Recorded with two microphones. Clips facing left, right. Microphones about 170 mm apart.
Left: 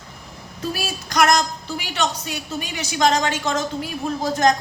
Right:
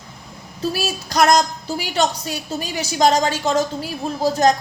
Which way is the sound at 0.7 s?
35° right (ahead or behind).